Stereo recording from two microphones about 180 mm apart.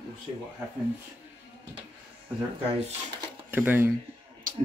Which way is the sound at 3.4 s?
10° right (ahead or behind).